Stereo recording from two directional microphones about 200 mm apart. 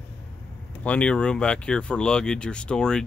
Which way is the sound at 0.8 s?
5° left (ahead or behind).